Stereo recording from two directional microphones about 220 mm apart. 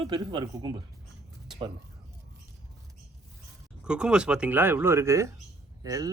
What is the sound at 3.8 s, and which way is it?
Speech, 5° right (ahead or behind).